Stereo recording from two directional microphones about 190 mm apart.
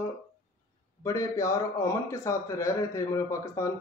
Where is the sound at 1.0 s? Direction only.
15° left (ahead or behind).